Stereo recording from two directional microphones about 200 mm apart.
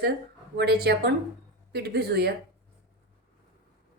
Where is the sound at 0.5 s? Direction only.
55° right (ahead or behind).